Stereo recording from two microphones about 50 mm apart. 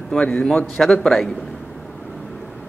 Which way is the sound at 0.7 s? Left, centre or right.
Centre.